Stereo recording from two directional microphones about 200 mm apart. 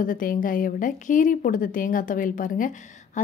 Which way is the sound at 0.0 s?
45° left (ahead or behind).